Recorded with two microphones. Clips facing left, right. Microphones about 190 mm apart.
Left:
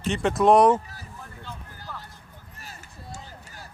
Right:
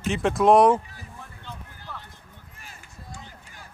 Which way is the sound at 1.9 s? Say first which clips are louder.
Left 1 dB; centre (ahead or behind).